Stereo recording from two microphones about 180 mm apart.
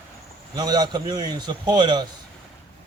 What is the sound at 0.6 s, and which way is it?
A man's voice, 20° right (ahead or behind).